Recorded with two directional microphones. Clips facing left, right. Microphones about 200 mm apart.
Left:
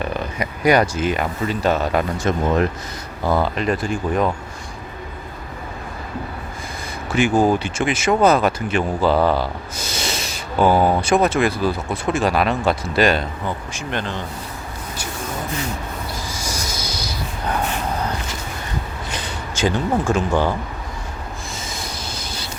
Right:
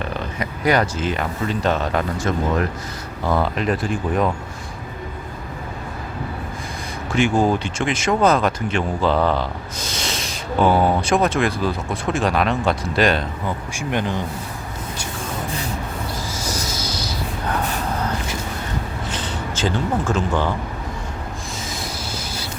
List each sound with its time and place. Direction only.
0.3 s speech: 10° left (ahead or behind)
2.3 s speech: 20° left (ahead or behind)
3.2 s speech: centre (ahead or behind)
7.2 s speech: 5° left (ahead or behind)
13.7 s speech: 15° right (ahead or behind)
16.4 s a sound: 15° left (ahead or behind)
19.1 s speech: 15° left (ahead or behind)
21.7 s vehicle: 5° right (ahead or behind)